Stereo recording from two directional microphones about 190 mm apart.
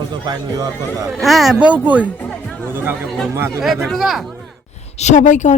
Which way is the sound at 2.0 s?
5° left (ahead or behind).